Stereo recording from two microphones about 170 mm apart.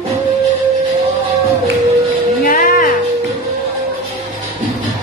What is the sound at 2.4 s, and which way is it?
Music, 55° left (ahead or behind).